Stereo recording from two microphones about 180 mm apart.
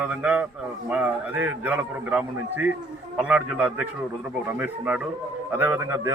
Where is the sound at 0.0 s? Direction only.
5° right (ahead or behind).